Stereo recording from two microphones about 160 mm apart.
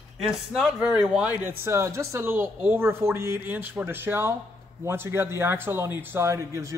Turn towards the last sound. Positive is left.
turn(degrees=-20)  # may be behind; listen again after turning